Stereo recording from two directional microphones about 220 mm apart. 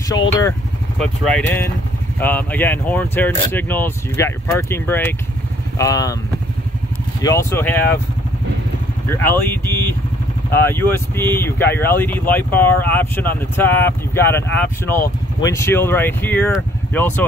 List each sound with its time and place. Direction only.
0.4 s speech: 5° left (ahead or behind)
7.2 s speech: 15° left (ahead or behind)
9.1 s speech: 10° left (ahead or behind)